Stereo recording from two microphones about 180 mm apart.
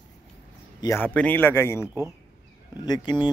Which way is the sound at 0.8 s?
15° left (ahead or behind).